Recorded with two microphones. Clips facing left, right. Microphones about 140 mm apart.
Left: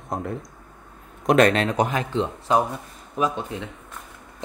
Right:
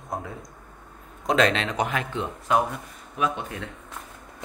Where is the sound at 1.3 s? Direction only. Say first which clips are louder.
Left 5 dB; 50° left (ahead or behind).